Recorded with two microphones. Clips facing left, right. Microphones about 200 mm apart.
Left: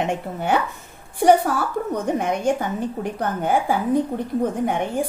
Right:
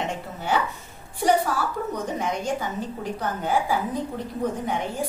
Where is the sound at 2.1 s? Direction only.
55° left (ahead or behind).